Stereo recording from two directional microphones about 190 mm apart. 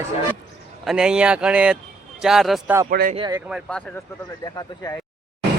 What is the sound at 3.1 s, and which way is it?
Speech, 20° right (ahead or behind).